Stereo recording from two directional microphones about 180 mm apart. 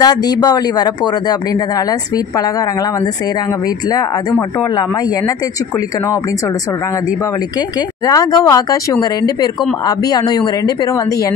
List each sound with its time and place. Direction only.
0.0 s speech: 20° left (ahead or behind)
3.9 s speech: 20° left (ahead or behind)
8.1 s speech: 20° left (ahead or behind)